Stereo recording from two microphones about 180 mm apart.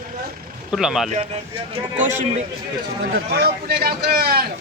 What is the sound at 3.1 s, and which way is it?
Speech, 60° right (ahead or behind).